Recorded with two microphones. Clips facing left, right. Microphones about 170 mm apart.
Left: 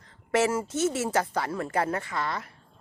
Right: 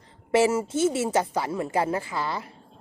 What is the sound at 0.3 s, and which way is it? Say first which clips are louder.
A woman's voice: right 4 dB; 30° right (ahead or behind).